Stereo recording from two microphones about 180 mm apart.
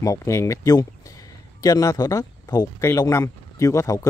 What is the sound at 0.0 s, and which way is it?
Speech, 15° left (ahead or behind).